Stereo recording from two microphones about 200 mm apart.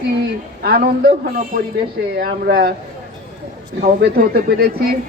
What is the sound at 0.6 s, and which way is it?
Speech, 50° right (ahead or behind).